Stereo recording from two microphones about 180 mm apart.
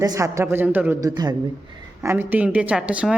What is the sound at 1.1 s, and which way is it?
Speech, 20° right (ahead or behind).